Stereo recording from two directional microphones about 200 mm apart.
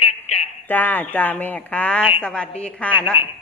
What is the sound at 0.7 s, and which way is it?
A woman's voice, 10° left (ahead or behind).